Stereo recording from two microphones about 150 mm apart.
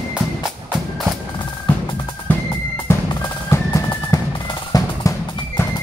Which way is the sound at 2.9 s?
15° left (ahead or behind).